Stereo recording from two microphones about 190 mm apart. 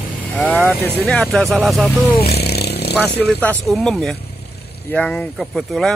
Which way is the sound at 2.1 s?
60° left (ahead or behind).